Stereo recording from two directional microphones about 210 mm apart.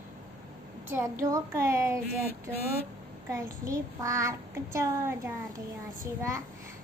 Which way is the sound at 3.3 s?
15° right (ahead or behind).